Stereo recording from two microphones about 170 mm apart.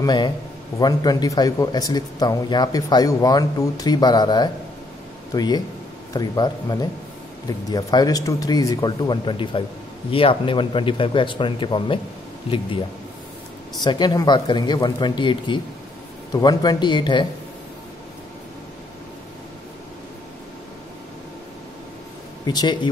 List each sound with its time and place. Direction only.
0.0 s a man's voice: 25° left (ahead or behind)
13.8 s speech: 25° left (ahead or behind)
22.5 s speech: 25° left (ahead or behind)